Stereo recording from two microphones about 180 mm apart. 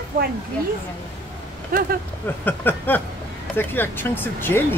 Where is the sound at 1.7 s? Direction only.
55° right (ahead or behind).